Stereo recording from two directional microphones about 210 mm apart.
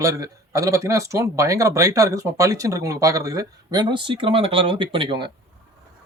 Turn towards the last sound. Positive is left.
turn(degrees=-25)  # may be behind; listen again after turning